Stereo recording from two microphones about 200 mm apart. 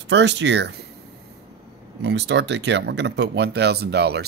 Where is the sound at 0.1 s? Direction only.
60° right (ahead or behind).